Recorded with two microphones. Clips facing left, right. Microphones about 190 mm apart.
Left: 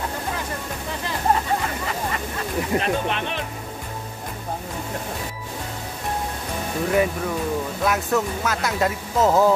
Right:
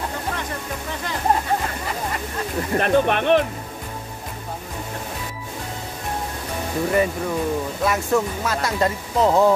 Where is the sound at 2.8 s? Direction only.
55° right (ahead or behind).